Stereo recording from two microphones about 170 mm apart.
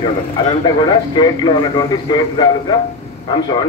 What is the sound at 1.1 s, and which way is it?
A man's voice, 25° left (ahead or behind).